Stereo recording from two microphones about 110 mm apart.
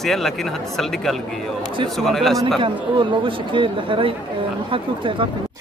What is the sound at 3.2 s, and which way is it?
Speech, 50° right (ahead or behind).